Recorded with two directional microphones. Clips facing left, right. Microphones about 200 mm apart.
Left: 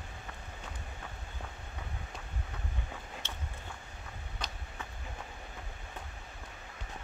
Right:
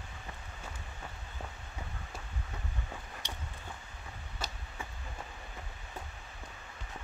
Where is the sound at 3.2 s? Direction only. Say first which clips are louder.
Right 1 dB; 15° right (ahead or behind).